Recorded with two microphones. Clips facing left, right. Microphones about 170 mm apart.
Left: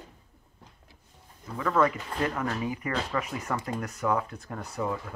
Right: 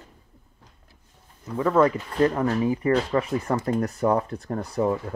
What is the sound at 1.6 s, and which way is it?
Speech, 30° right (ahead or behind).